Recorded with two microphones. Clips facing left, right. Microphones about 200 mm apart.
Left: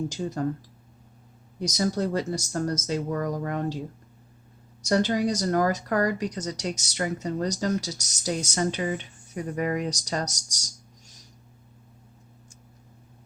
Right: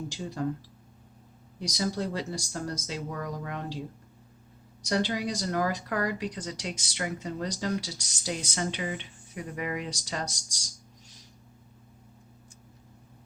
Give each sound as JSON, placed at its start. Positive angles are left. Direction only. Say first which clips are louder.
{"t": 0.1, "sound": "speech", "louder": "left 5 dB", "side_deg": 45}
{"t": 1.5, "sound": "speech", "louder": "left 5 dB", "side_deg": 45}
{"t": 4.8, "sound": "speech", "louder": "left 5 dB", "side_deg": 45}